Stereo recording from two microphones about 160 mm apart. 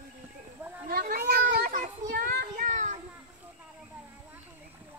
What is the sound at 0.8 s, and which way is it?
Child singing, 65° right (ahead or behind).